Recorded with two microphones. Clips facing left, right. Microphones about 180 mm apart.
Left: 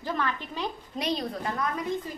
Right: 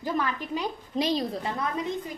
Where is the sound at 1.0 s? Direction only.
30° right (ahead or behind).